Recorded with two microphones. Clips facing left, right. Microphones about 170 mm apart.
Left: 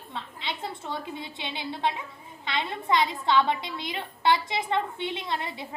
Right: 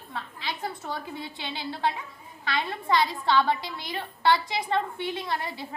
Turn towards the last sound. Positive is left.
turn(degrees=20)  # may be behind; listen again after turning